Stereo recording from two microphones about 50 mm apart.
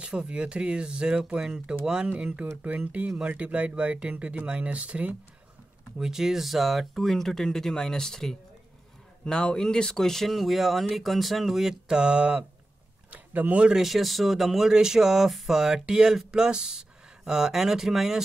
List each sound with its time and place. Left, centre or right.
0.0 s speech: centre
5.9 s speech: centre
11.9 s speech: centre
13.1 s a sound: right
13.7 s speech: centre